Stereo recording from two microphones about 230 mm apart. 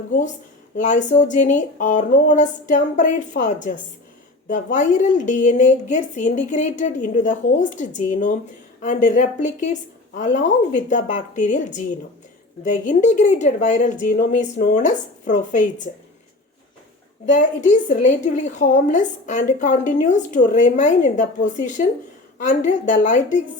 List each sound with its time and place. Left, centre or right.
0.9 s a woman's voice: left
17.3 s a woman's voice: left